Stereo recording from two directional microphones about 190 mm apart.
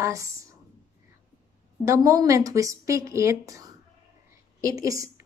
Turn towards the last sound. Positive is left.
turn(degrees=-15)  # may be behind; listen again after turning